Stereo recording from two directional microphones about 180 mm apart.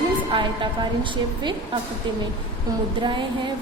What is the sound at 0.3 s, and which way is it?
A woman's voice, 25° right (ahead or behind).